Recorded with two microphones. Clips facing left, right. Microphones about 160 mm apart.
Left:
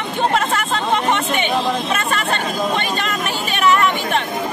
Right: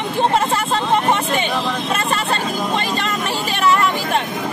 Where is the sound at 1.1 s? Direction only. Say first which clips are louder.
Even; 30° right (ahead or behind).